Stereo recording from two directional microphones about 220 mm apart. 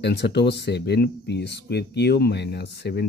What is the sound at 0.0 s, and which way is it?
Speech, 50° left (ahead or behind).